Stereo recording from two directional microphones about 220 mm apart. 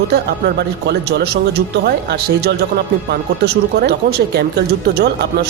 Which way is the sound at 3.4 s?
45° right (ahead or behind).